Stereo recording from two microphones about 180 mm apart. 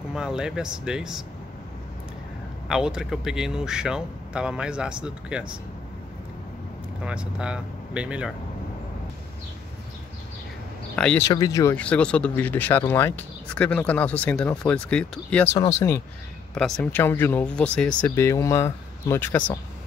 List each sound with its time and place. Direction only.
0.1 s speech: 5° right (ahead or behind)
2.7 s speech: 5° right (ahead or behind)
7.1 s speech: 5° right (ahead or behind)
11.0 s speech: 5° left (ahead or behind)
11.2 s speech: 20° left (ahead or behind)
11.7 s speech: 5° left (ahead or behind)
16.5 s speech: 5° left (ahead or behind)